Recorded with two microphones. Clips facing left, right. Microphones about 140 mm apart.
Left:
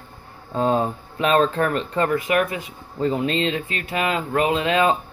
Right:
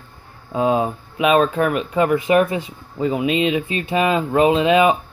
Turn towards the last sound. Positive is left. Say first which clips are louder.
# right 5 dB
turn(degrees=-15)  # may be behind; listen again after turning